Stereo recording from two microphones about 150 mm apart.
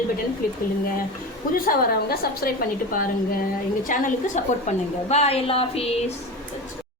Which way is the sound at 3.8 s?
60° left (ahead or behind).